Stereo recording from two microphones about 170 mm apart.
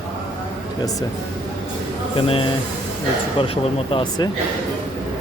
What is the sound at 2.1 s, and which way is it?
Speech, 30° left (ahead or behind).